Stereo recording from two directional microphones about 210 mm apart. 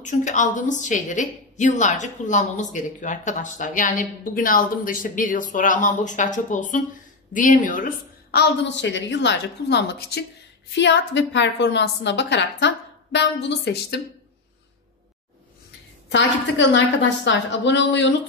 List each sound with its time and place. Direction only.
0.0 s a woman's voice: 35° left (ahead or behind)
8.4 s a woman's voice: 60° left (ahead or behind)
16.1 s a woman's voice: 60° left (ahead or behind)